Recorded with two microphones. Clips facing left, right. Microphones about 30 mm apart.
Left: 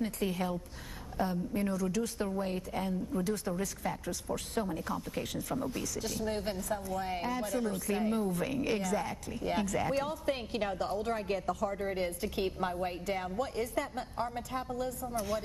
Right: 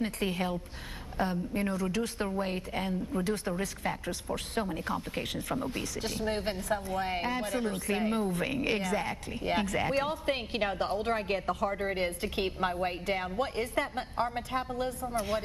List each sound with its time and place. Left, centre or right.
0.0 s speech: right